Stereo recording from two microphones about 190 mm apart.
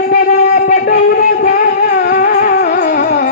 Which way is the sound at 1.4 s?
45° left (ahead or behind).